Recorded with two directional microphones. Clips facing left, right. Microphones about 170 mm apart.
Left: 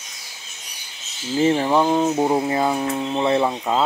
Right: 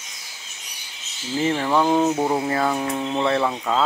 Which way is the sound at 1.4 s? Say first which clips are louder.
Left 3 dB; 20° left (ahead or behind).